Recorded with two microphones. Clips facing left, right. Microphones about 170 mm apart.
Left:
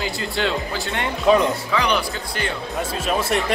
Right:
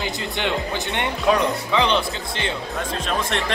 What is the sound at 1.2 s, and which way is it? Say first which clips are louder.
Speech: left 3 dB; centre (ahead or behind).